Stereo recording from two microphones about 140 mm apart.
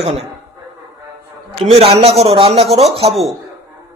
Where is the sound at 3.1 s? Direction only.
Centre (ahead or behind).